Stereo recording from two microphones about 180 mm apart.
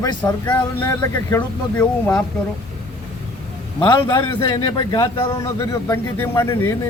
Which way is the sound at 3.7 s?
25° left (ahead or behind).